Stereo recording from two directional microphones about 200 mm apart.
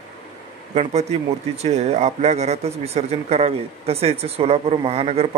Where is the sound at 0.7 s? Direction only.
35° right (ahead or behind).